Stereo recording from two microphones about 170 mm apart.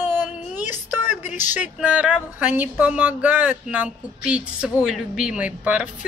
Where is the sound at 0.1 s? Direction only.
10° right (ahead or behind).